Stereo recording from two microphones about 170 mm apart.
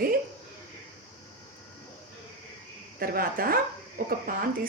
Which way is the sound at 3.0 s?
60° right (ahead or behind).